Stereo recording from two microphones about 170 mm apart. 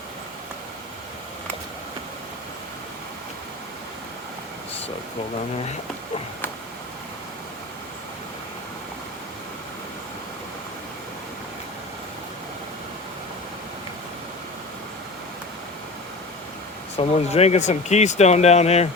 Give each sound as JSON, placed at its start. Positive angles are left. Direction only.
{"t": 17.0, "sound": "speech", "side_deg": 40}